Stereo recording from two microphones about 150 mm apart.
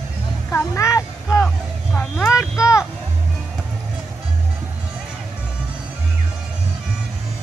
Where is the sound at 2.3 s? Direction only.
20° left (ahead or behind).